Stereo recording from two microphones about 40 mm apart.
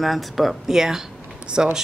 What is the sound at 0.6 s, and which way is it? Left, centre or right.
Speech, centre.